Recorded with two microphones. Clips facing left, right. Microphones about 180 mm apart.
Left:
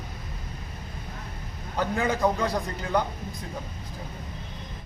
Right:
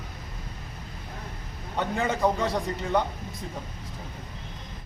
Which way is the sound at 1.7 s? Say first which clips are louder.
Left 1 dB; centre (ahead or behind).